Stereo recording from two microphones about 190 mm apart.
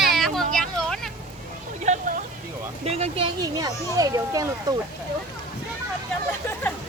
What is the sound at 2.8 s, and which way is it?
A child's voice, 35° right (ahead or behind).